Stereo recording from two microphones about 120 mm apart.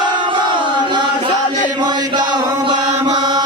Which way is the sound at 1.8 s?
40° right (ahead or behind).